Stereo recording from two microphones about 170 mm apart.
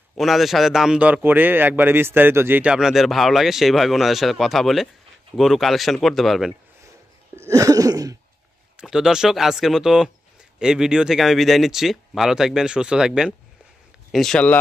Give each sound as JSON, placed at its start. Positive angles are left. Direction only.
{"t": 0.2, "sound": "a man's voice", "side_deg": 0}
{"t": 7.3, "sound": "a sound", "side_deg": -15}
{"t": 8.7, "sound": "a man's voice", "side_deg": -5}